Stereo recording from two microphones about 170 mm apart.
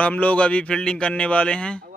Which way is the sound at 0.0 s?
10° left (ahead or behind).